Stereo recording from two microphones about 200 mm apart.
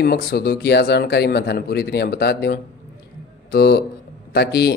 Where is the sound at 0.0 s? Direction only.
50° left (ahead or behind).